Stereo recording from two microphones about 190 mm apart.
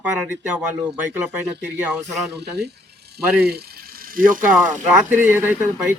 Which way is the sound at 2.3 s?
60° right (ahead or behind).